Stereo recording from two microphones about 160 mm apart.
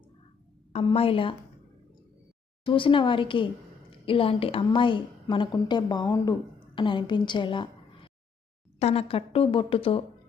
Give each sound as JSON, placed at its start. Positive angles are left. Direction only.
{"t": 0.9, "sound": "a woman's voice", "side_deg": 35}
{"t": 2.6, "sound": "a woman's voice", "side_deg": 30}